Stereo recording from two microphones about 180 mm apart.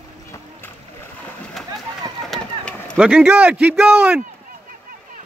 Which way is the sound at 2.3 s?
5° left (ahead or behind).